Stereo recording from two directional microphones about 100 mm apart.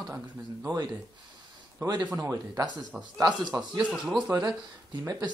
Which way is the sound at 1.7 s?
40° right (ahead or behind).